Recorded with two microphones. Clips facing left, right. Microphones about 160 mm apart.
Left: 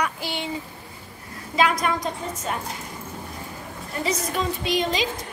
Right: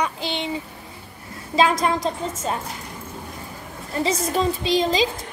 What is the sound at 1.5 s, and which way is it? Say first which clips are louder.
A woman's voice: right 3 dB; 30° right (ahead or behind).